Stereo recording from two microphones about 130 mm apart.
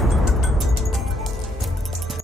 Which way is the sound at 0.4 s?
Centre (ahead or behind).